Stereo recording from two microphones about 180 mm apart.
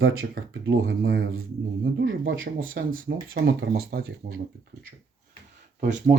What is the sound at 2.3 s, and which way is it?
Speech, 90° right.